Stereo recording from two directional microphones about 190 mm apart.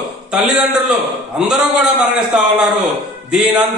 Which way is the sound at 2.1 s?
Centre (ahead or behind).